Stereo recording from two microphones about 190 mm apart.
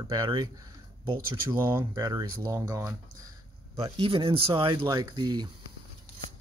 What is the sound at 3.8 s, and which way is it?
Speech, 25° right (ahead or behind).